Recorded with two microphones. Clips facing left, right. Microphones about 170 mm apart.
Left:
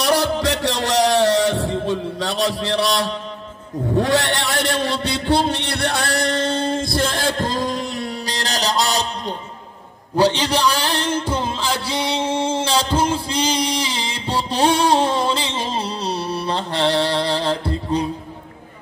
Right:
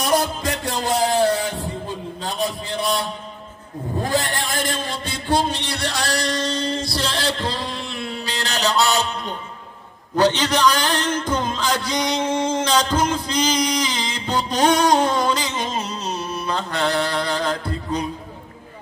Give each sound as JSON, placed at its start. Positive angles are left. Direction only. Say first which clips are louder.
{"t": 0.0, "sound": "music", "louder": "left 2 dB", "side_deg": 70}
{"t": 3.9, "sound": "a man's voice", "louder": "left 4 dB", "side_deg": 80}
{"t": 10.1, "sound": "a man's voice", "louder": "left 1 dB", "side_deg": 10}
{"t": 11.1, "sound": "music", "louder": "left 1 dB", "side_deg": 10}
{"t": 11.6, "sound": "a sound", "louder": "right 1 dB", "side_deg": 10}
{"t": 11.9, "sound": "a sound", "louder": "left 1 dB", "side_deg": 30}
{"t": 14.1, "sound": "music", "louder": "left 1 dB", "side_deg": 30}